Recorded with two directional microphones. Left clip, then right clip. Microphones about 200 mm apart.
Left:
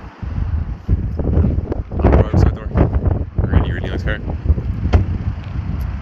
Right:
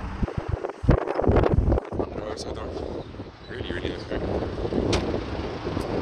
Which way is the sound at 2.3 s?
5° right (ahead or behind).